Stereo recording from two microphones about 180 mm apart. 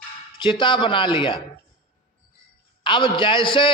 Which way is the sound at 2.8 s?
25° left (ahead or behind).